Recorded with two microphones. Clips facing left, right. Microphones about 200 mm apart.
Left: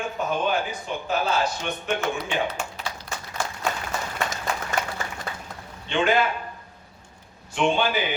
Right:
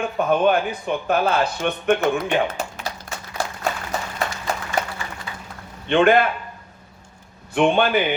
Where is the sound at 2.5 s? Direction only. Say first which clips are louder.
Right 3 dB; 40° right (ahead or behind).